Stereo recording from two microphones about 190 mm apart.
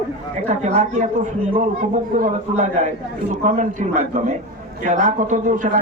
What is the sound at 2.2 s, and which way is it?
A man's voice, 40° right (ahead or behind).